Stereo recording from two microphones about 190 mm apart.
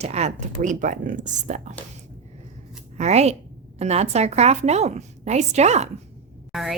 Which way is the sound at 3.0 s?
35° right (ahead or behind).